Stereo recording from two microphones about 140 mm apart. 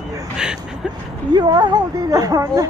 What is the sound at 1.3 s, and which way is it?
A woman's voice, 30° right (ahead or behind).